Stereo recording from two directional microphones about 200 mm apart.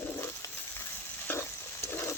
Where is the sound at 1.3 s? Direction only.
10° left (ahead or behind).